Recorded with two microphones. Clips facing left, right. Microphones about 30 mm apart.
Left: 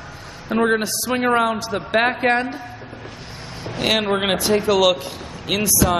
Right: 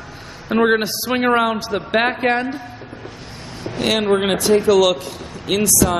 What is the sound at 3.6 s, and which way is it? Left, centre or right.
Speech, centre.